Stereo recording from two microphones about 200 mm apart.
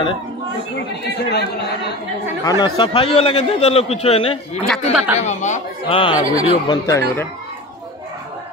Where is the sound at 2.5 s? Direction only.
25° left (ahead or behind).